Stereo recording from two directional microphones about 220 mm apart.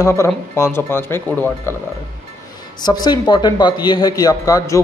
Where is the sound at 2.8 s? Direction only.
20° left (ahead or behind).